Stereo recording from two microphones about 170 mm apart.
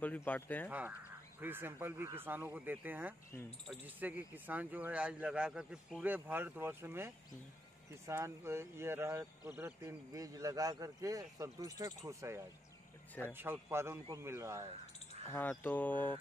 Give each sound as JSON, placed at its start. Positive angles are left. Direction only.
{"t": 0.0, "sound": "speech", "side_deg": 10}
{"t": 0.7, "sound": "speech", "side_deg": -10}
{"t": 15.2, "sound": "speech", "side_deg": 10}